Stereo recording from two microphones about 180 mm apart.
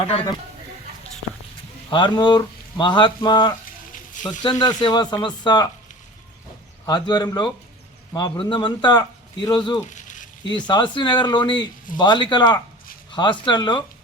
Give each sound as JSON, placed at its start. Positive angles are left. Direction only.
{"t": 1.9, "sound": "speech", "side_deg": 25}
{"t": 6.8, "sound": "speech", "side_deg": 25}
{"t": 9.8, "sound": "a sound", "side_deg": 45}
{"t": 10.4, "sound": "speech", "side_deg": 25}